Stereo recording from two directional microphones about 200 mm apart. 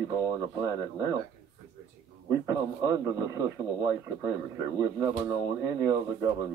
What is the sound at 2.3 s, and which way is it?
Speech, 15° right (ahead or behind).